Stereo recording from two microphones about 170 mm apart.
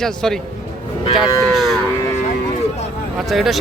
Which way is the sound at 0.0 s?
5° left (ahead or behind).